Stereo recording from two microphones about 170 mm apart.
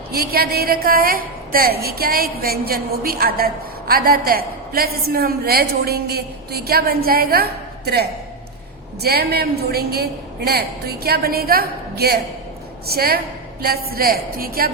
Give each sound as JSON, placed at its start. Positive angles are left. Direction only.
{"t": 0.1, "sound": "a woman's voice", "side_deg": -65}